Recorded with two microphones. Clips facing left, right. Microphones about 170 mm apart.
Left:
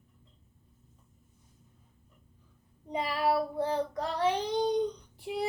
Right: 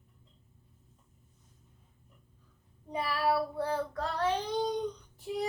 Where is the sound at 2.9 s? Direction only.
20° left (ahead or behind).